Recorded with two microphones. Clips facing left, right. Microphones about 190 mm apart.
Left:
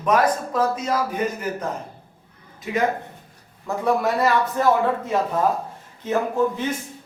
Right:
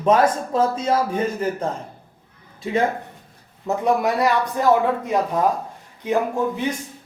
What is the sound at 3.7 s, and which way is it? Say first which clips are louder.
A man's voice: right 2 dB; 20° right (ahead or behind).